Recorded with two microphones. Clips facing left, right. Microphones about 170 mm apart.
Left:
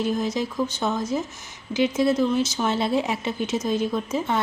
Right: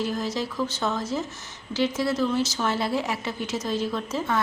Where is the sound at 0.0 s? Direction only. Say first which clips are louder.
Left 3 dB; 20° left (ahead or behind).